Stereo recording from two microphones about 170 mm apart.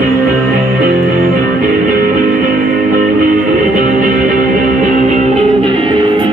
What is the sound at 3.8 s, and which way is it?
Music, 50° right (ahead or behind).